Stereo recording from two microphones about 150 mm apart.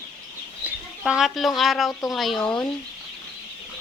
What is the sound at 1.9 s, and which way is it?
Speech, 25° left (ahead or behind).